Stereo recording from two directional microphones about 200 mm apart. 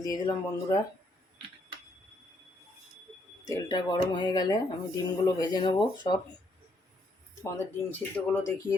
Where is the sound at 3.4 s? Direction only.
20° left (ahead or behind).